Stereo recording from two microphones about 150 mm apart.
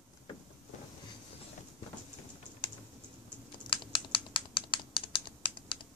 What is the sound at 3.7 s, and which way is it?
Typing, 35° left (ahead or behind).